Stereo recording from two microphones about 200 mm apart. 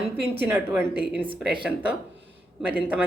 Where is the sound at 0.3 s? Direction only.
10° right (ahead or behind).